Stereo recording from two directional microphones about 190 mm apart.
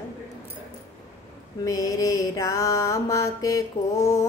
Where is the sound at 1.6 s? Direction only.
15° left (ahead or behind).